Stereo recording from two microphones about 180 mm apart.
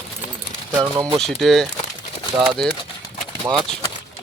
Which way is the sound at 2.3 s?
25° right (ahead or behind).